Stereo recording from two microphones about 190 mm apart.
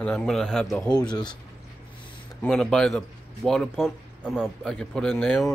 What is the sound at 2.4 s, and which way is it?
Speech, 5° left (ahead or behind).